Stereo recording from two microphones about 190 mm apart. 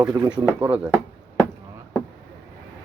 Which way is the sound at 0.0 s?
20° right (ahead or behind).